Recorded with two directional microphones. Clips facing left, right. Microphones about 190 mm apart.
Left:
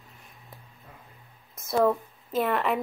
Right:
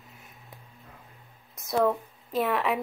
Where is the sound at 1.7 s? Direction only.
Centre (ahead or behind).